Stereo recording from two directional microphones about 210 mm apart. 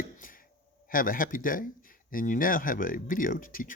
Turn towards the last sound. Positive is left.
turn(degrees=40)  # may be behind; listen again after turning